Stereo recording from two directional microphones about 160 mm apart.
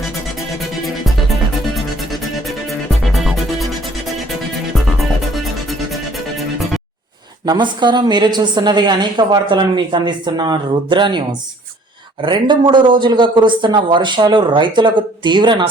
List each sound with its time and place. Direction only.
3.0 s music: centre (ahead or behind)
7.4 s a woman's voice: 30° right (ahead or behind)